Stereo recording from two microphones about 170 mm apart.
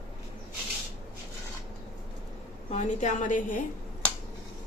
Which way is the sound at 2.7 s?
45° left (ahead or behind).